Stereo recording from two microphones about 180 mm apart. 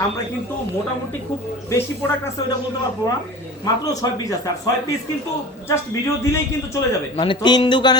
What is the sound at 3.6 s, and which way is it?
Speech, 20° left (ahead or behind).